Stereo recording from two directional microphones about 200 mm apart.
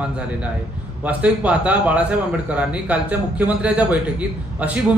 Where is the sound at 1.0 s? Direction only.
5° right (ahead or behind).